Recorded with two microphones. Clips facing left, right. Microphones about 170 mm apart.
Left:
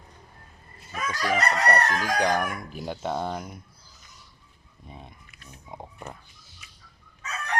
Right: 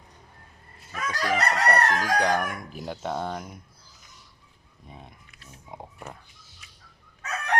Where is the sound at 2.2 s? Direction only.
Centre (ahead or behind).